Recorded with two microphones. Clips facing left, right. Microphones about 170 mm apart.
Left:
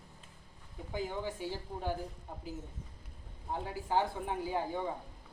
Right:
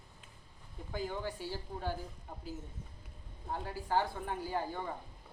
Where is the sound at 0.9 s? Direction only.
15° left (ahead or behind).